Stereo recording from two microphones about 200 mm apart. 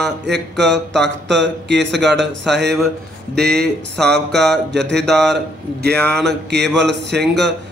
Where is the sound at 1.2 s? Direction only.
60° right (ahead or behind).